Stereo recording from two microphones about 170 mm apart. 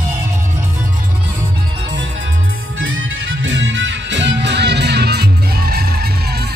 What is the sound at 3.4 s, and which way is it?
Music, 90° right.